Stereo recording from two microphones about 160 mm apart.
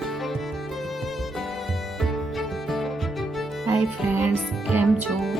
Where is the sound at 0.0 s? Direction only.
Centre (ahead or behind).